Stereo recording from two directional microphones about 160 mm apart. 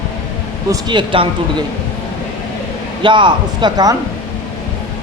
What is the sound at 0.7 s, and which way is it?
Speech, 30° right (ahead or behind).